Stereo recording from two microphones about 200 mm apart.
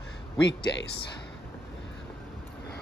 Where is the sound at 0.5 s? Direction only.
60° left (ahead or behind).